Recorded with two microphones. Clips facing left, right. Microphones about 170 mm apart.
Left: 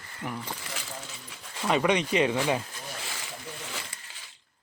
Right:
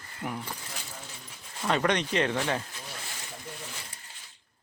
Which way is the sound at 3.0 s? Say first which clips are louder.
Left 3 dB; 90° left.